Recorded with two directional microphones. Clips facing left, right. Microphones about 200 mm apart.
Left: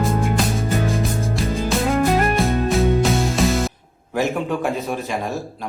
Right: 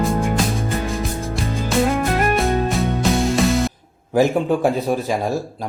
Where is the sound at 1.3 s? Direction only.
Centre (ahead or behind).